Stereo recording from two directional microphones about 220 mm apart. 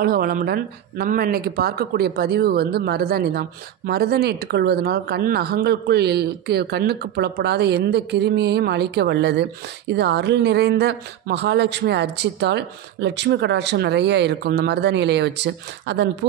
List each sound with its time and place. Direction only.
0.0 s speech: 40° right (ahead or behind)